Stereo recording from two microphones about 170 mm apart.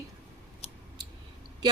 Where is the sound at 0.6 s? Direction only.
35° left (ahead or behind).